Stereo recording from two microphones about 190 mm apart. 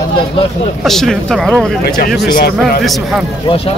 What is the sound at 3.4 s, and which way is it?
Speech, 30° left (ahead or behind).